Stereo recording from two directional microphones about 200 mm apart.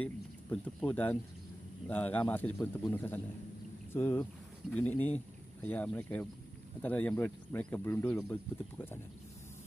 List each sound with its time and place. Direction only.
0.0 s speech: 5° left (ahead or behind)